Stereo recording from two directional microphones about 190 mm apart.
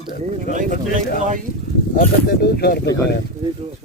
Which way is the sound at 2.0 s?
60° left (ahead or behind).